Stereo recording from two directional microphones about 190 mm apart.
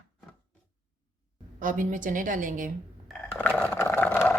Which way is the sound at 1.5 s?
45° right (ahead or behind).